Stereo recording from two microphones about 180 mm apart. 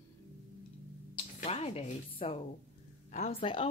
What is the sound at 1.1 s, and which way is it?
Music, 35° left (ahead or behind).